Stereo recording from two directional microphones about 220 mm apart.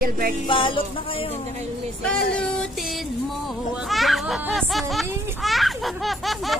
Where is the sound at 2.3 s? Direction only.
5° left (ahead or behind).